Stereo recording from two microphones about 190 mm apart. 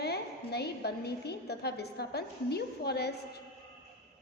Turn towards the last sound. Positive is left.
turn(degrees=60)  # may be behind; listen again after turning